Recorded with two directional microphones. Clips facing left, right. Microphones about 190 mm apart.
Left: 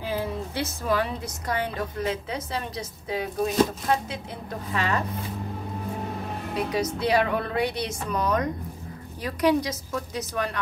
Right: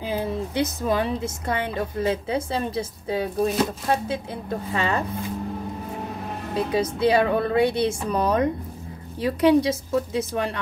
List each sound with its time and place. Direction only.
0.0 s a woman's voice: 20° right (ahead or behind)
6.5 s a woman's voice: 30° right (ahead or behind)